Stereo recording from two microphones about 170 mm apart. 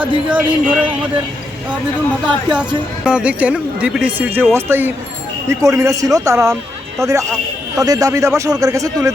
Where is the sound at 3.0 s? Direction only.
5° right (ahead or behind).